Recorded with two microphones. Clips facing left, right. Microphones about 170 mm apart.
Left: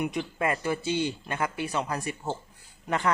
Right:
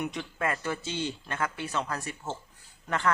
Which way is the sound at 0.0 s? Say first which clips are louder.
Left 3 dB; 10° left (ahead or behind).